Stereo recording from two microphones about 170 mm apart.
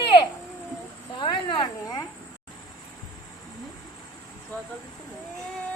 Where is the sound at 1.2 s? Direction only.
30° left (ahead or behind).